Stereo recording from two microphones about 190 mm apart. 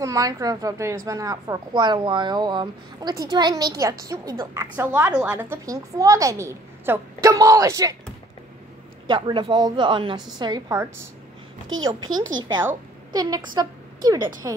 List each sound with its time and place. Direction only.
0.0 s a woman's voice: 15° right (ahead or behind)
9.0 s a woman's voice: 25° right (ahead or behind)
12.0 s speech: 90° right
12.6 s a woman's voice: 20° right (ahead or behind)